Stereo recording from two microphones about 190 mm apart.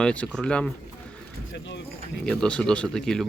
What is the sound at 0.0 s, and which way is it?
Speech, 5° left (ahead or behind).